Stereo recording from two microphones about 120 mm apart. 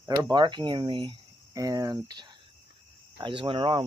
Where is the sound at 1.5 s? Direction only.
30° right (ahead or behind).